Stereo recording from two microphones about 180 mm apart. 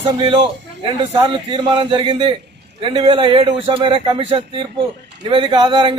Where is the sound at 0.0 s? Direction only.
30° right (ahead or behind).